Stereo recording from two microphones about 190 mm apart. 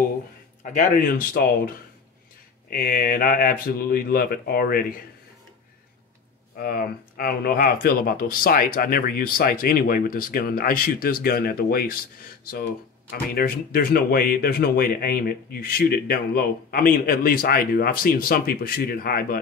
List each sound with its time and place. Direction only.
0.7 s speech: 45° left (ahead or behind)
2.7 s speech: 50° left (ahead or behind)
6.6 s speech: 50° left (ahead or behind)
13.1 s speech: 50° left (ahead or behind)